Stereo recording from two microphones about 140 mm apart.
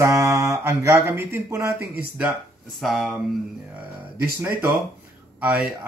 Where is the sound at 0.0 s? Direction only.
20° right (ahead or behind).